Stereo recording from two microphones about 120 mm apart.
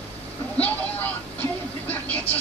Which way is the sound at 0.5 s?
15° left (ahead or behind).